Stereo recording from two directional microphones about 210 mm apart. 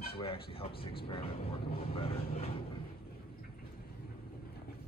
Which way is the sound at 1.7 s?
25° left (ahead or behind).